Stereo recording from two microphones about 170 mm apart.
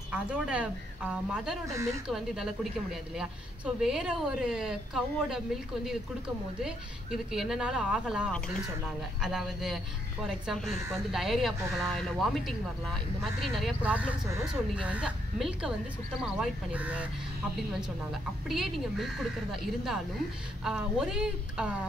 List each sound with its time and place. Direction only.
0.1 s speech: 5° right (ahead or behind)
1.7 s speech: 15° right (ahead or behind)
2.0 s a woman's voice: 5° right (ahead or behind)
18.5 s a woman's voice: centre (ahead or behind)